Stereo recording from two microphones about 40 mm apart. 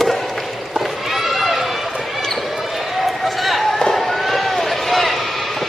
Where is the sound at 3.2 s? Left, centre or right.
Centre.